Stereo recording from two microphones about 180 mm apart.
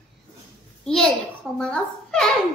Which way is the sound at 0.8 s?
Centre (ahead or behind).